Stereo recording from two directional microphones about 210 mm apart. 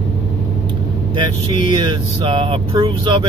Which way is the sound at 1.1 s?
20° right (ahead or behind).